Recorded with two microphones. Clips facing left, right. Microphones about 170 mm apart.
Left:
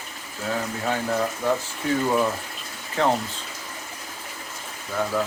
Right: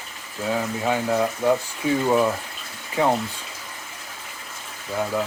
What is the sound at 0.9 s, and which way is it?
Speech, 10° right (ahead or behind).